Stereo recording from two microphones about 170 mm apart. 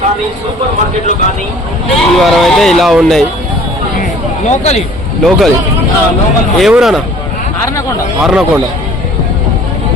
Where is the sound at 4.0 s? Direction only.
40° left (ahead or behind).